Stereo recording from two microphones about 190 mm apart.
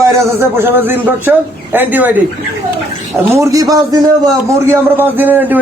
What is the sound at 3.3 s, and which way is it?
A man's voice, 15° right (ahead or behind).